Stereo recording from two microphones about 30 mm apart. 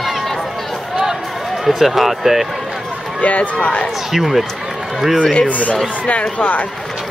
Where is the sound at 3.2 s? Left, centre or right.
Left.